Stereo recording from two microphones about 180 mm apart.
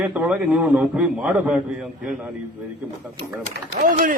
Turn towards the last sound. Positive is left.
turn(degrees=-50)  # may be behind; listen again after turning